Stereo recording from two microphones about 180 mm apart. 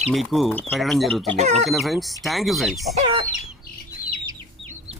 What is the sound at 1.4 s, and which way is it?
Speech, 40° right (ahead or behind).